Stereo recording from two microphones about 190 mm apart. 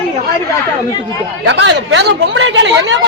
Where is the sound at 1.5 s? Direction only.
65° right (ahead or behind).